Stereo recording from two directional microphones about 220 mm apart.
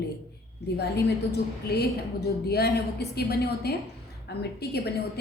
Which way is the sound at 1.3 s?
45° left (ahead or behind).